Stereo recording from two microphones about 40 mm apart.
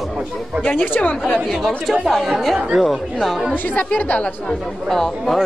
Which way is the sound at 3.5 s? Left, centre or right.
Left.